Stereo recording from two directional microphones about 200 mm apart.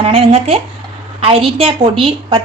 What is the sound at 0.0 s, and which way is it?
A woman's voice, 30° right (ahead or behind).